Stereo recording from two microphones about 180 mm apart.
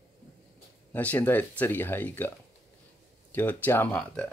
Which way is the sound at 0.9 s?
10° left (ahead or behind).